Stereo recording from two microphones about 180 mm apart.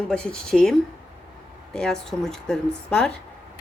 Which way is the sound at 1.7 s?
5° left (ahead or behind).